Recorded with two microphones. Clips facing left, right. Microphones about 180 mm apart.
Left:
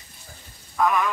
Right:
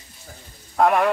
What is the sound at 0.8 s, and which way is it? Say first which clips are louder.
Speech: right 4 dB; 65° right (ahead or behind).